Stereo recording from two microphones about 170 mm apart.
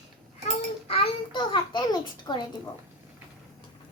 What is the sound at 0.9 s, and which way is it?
A child's voice, 30° left (ahead or behind).